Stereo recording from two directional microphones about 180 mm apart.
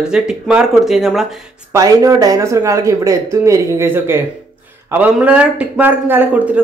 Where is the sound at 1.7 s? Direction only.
20° right (ahead or behind).